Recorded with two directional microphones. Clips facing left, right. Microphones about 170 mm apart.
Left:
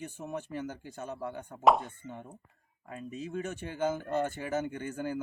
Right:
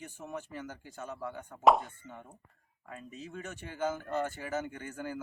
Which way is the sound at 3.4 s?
20° left (ahead or behind).